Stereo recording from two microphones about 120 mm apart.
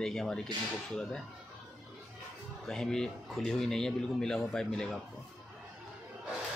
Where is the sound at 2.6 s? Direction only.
5° left (ahead or behind).